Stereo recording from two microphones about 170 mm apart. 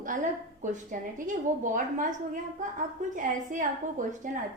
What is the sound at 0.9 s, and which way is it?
A woman's voice, 50° right (ahead or behind).